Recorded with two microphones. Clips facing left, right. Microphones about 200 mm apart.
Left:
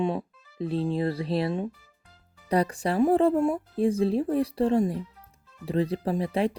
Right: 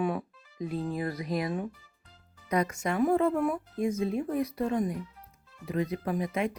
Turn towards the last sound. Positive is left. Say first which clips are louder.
# left 4 dB
turn(degrees=30)  # may be behind; listen again after turning